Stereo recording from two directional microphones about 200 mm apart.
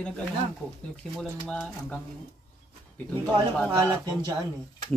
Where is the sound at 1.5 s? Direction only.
5° left (ahead or behind).